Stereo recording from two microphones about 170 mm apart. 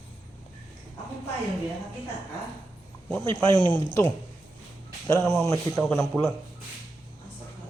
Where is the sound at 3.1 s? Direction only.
5° left (ahead or behind).